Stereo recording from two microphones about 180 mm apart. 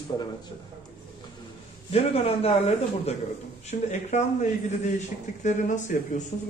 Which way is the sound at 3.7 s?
40° left (ahead or behind).